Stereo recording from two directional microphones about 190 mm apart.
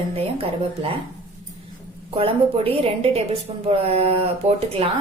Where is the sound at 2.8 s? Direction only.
30° right (ahead or behind).